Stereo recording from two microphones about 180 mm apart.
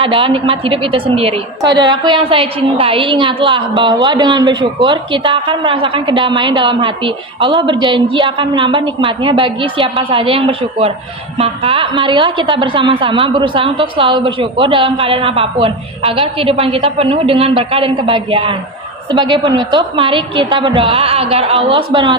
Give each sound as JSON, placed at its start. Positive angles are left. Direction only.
{"t": 0.0, "sound": "a woman's voice", "side_deg": -30}